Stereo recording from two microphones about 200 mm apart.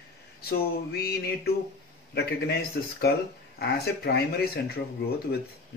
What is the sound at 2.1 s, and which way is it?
Speech, 55° left (ahead or behind).